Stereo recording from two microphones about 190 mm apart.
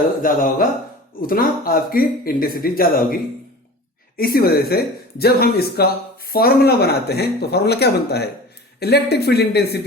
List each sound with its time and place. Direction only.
0.2 s speech: 45° left (ahead or behind)
4.2 s speech: 50° left (ahead or behind)